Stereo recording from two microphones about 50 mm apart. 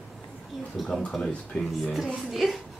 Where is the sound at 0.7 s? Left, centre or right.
Centre.